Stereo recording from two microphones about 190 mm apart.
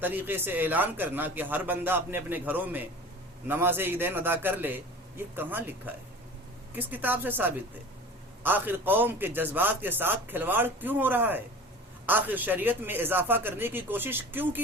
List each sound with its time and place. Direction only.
0.0 s a man's voice: 10° right (ahead or behind)